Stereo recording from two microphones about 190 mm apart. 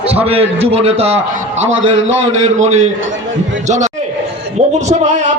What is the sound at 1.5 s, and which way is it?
Speech, 90° right.